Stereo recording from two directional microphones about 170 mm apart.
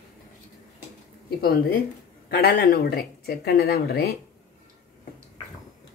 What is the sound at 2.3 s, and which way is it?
Speech, 65° left (ahead or behind).